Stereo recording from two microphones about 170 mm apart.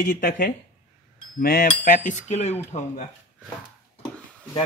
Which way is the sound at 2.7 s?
30° left (ahead or behind).